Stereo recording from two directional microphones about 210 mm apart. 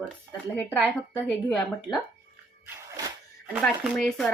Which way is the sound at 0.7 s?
5° left (ahead or behind).